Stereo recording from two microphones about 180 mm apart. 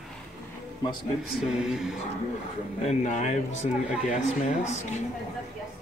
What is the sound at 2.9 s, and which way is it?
Speech, 40° left (ahead or behind).